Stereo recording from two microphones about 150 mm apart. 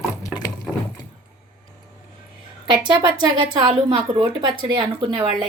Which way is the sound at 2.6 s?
30° right (ahead or behind).